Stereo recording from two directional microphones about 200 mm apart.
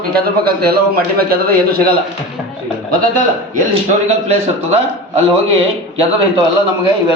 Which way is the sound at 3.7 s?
35° right (ahead or behind).